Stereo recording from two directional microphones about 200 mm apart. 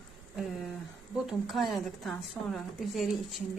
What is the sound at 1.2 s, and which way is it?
A woman's voice, centre (ahead or behind).